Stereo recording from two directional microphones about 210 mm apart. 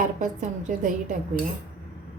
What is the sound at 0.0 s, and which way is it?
A woman's voice, 40° right (ahead or behind).